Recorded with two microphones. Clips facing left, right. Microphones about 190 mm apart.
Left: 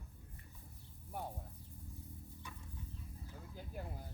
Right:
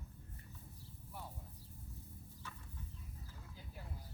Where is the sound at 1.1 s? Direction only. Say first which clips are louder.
Left 7 dB; 50° left (ahead or behind).